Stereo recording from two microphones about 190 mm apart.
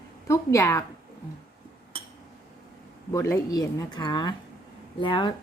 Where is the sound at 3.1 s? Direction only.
15° left (ahead or behind).